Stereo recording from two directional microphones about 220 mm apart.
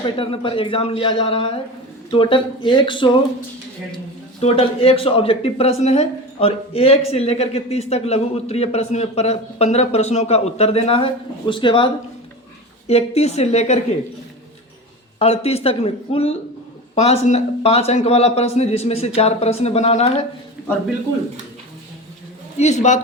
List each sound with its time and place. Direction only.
0.0 s speech: 25° left (ahead or behind)
4.4 s speech: 25° left (ahead or behind)
12.9 s speech: 30° left (ahead or behind)
15.2 s speech: 30° left (ahead or behind)
22.5 s a man's voice: 30° left (ahead or behind)